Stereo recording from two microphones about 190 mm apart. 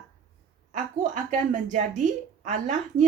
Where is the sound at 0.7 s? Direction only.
40° right (ahead or behind).